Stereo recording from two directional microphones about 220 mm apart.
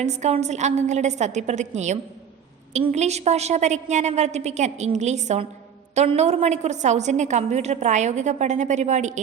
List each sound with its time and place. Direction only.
0.0 s a woman's voice: 30° right (ahead or behind)